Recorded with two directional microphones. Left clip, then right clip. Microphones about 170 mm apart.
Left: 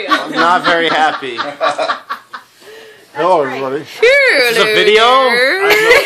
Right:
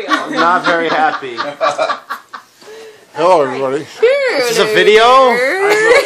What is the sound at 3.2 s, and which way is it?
Speech, 25° right (ahead or behind).